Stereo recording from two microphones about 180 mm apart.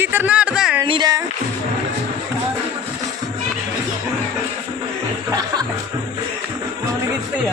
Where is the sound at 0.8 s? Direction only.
25° right (ahead or behind).